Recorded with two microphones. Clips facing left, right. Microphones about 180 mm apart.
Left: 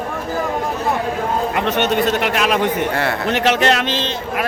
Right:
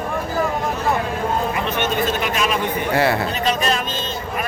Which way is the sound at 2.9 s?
5° right (ahead or behind).